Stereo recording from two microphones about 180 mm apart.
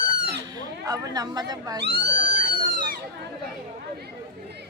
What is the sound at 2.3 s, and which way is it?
Cat, 50° right (ahead or behind).